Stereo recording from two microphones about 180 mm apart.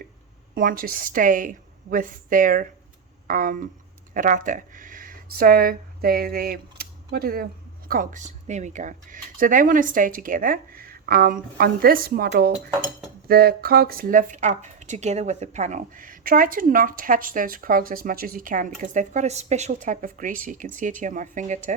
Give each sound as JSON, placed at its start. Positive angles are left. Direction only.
{"t": 0.5, "sound": "speech", "side_deg": -50}
{"t": 7.9, "sound": "speech", "side_deg": -45}